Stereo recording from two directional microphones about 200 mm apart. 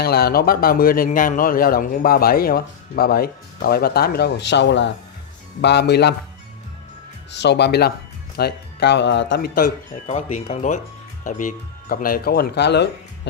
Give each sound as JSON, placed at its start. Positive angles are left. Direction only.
{"t": 0.0, "sound": "a man's voice", "side_deg": 50}
{"t": 7.3, "sound": "speech", "side_deg": 60}
{"t": 10.0, "sound": "speech", "side_deg": 35}